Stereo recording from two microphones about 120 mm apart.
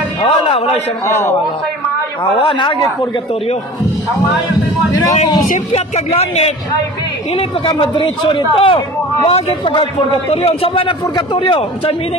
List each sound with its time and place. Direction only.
0.2 s a sound: 50° left (ahead or behind)
1.0 s a man's voice: 20° left (ahead or behind)
2.3 s speech: 40° left (ahead or behind)
5.7 s speech: 60° left (ahead or behind)
7.6 s speech: 45° left (ahead or behind)